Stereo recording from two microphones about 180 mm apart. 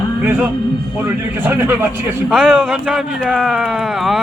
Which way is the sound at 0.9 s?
15° right (ahead or behind).